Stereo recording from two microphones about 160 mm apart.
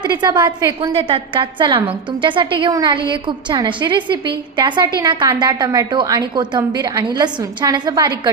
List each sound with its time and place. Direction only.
0.0 s a woman's voice: 25° right (ahead or behind)